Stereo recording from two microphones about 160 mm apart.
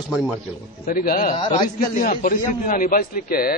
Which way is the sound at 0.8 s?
65° left (ahead or behind).